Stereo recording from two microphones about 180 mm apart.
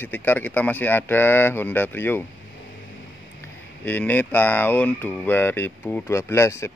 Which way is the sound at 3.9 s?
10° left (ahead or behind).